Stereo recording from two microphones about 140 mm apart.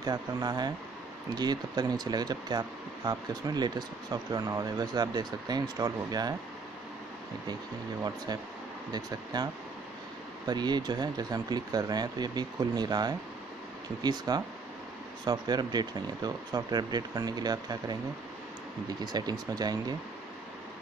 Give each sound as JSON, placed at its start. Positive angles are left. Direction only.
{"t": 0.0, "sound": "speech", "side_deg": -30}
{"t": 8.9, "sound": "speech", "side_deg": -30}